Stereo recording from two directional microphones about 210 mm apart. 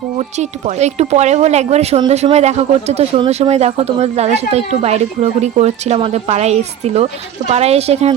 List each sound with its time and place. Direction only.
0.3 s a woman's voice: 30° right (ahead or behind)